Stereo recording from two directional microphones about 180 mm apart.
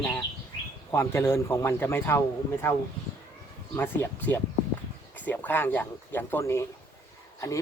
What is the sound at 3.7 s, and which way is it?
Speech, 10° left (ahead or behind).